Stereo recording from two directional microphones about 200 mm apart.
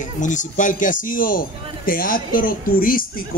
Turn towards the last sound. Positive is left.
turn(degrees=45)  # may be behind; listen again after turning